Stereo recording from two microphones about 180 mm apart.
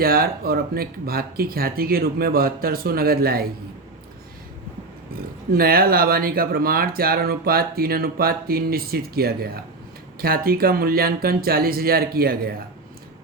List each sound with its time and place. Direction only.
0.0 s speech: 55° right (ahead or behind)
5.5 s speech: 55° right (ahead or behind)